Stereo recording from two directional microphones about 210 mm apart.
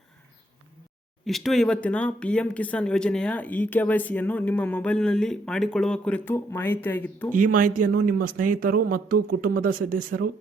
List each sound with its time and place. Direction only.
1.2 s speech: centre (ahead or behind)
7.3 s speech: 40° right (ahead or behind)